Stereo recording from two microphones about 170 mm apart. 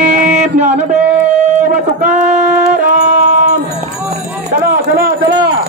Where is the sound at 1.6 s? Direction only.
45° right (ahead or behind).